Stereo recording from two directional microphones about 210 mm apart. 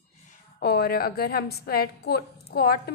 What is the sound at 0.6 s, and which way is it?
A woman's voice, 50° left (ahead or behind).